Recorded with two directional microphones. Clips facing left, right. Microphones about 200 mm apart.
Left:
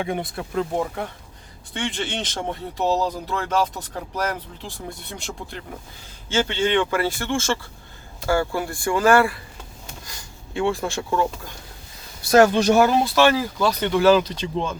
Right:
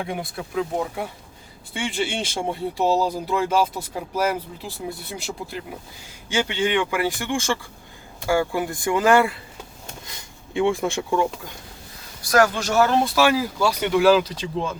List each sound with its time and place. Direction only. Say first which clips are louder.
0.0 s speech: left 3 dB; centre (ahead or behind); by 11.3 s 15° right (ahead or behind)
12.2 s speech: left 4 dB; 25° left (ahead or behind)
13.1 s speech: left 1 dB; 5° right (ahead or behind)